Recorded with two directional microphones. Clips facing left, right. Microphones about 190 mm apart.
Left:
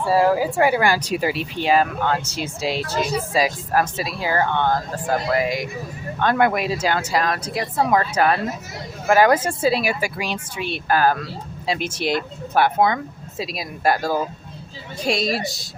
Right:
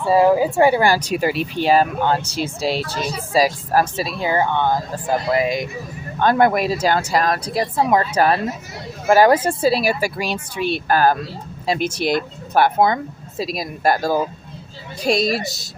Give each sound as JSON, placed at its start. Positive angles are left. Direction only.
{"t": 0.0, "sound": "speech", "side_deg": -20}
{"t": 0.9, "sound": "speech", "side_deg": -50}
{"t": 6.1, "sound": "speech", "side_deg": -35}